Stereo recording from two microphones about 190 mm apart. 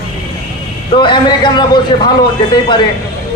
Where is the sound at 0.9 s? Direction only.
25° left (ahead or behind).